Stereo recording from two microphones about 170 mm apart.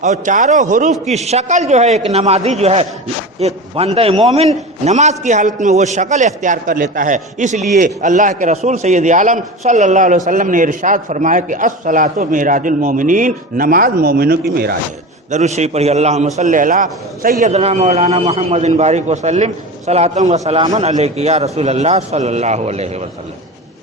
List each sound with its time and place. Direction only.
0.0 s a man's voice: 45° right (ahead or behind); by 14.8 s 65° right (ahead or behind)
15.3 s a man's voice: 40° right (ahead or behind)
17.4 s a man's voice: 40° right (ahead or behind)